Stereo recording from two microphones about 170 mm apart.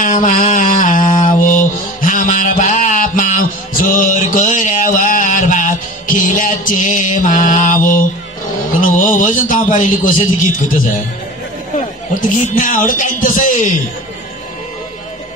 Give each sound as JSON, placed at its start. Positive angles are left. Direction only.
{"t": 0.0, "sound": "mantra", "side_deg": 50}
{"t": 8.7, "sound": "a sound", "side_deg": 50}
{"t": 12.1, "sound": "speech", "side_deg": 50}